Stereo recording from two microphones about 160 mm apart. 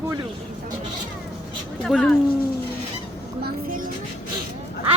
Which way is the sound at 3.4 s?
75° right (ahead or behind).